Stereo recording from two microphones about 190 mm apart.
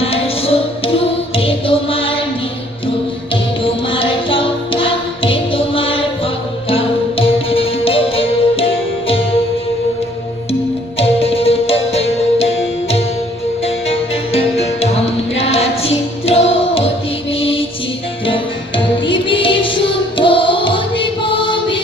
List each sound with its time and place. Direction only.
0.0 s music: 30° left (ahead or behind)
3.6 s music: 30° left (ahead or behind)
10.9 s music: 30° left (ahead or behind)
18.8 s music: 25° left (ahead or behind)